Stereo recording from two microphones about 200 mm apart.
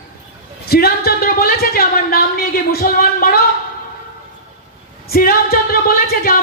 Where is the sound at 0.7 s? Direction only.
50° left (ahead or behind).